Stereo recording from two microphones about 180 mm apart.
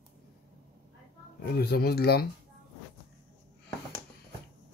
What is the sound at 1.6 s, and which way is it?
Speech, 60° left (ahead or behind).